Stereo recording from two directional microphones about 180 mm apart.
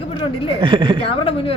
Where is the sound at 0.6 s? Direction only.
25° right (ahead or behind).